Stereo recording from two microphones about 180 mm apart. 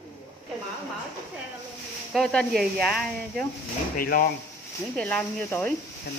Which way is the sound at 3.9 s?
50° left (ahead or behind).